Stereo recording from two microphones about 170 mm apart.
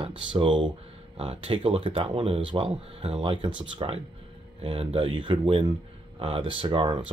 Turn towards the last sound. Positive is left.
turn(degrees=-30)  # may be behind; listen again after turning